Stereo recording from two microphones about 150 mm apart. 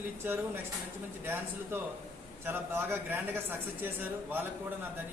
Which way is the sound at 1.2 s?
15° right (ahead or behind).